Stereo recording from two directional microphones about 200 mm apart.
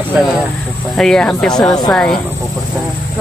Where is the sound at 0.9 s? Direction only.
5° left (ahead or behind).